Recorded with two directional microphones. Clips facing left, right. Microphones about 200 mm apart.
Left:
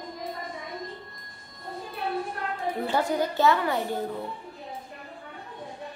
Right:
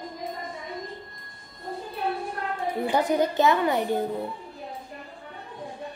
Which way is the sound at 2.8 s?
20° right (ahead or behind).